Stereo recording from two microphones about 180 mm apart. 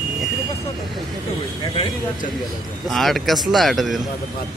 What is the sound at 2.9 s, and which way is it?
Speech, centre (ahead or behind).